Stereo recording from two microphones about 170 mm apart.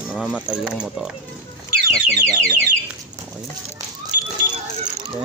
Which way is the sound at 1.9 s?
5° left (ahead or behind).